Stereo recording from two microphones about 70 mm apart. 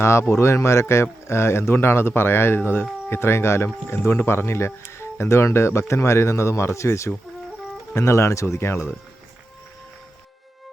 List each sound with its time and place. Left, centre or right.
0.0 s speech: left